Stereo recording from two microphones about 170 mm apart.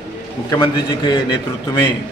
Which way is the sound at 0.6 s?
25° left (ahead or behind).